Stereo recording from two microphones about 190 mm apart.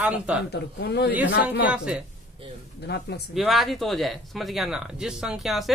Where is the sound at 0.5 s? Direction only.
60° left (ahead or behind).